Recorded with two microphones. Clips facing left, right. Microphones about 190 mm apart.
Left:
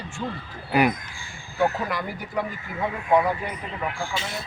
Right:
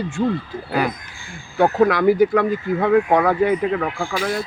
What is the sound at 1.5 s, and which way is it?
Speech, 75° right (ahead or behind).